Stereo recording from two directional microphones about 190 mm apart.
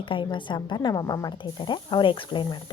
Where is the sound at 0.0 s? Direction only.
25° left (ahead or behind).